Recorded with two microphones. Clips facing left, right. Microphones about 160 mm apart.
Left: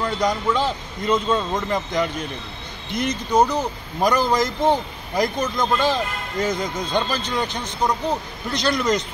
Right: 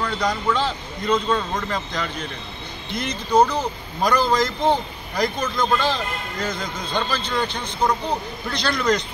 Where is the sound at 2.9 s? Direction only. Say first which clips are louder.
Left 4 dB; 45° left (ahead or behind).